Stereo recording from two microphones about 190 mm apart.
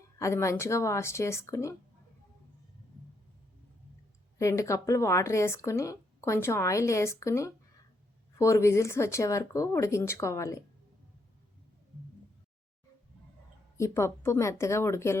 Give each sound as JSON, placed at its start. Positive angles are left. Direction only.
{"t": 0.2, "sound": "speech", "side_deg": 15}
{"t": 4.4, "sound": "speech", "side_deg": 15}
{"t": 13.7, "sound": "speech", "side_deg": 15}